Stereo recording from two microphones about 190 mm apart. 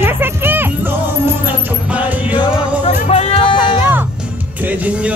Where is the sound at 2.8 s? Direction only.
35° left (ahead or behind).